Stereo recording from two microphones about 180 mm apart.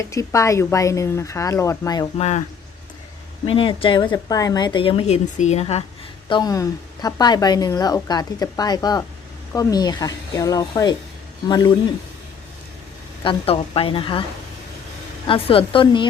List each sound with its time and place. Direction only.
0.1 s speech: 15° left (ahead or behind)
2.1 s speech: 40° left (ahead or behind)
3.4 s a woman's voice: 30° left (ahead or behind)
6.2 s a woman's voice: 25° left (ahead or behind)
13.2 s a woman's voice: 30° left (ahead or behind)
15.3 s a woman's voice: 30° left (ahead or behind)